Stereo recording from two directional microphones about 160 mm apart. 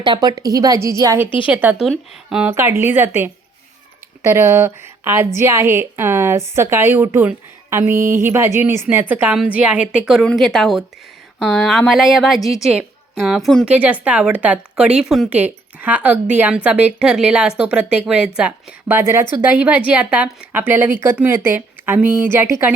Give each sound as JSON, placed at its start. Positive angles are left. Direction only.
{"t": 0.0, "sound": "a woman's voice", "side_deg": -30}
{"t": 2.5, "sound": "a woman's voice", "side_deg": -15}
{"t": 13.7, "sound": "a woman's voice", "side_deg": -10}